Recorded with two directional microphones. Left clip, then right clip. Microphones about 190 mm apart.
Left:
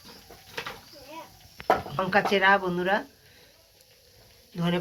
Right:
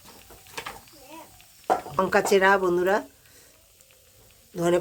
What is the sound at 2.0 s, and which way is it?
Speech, 90° right.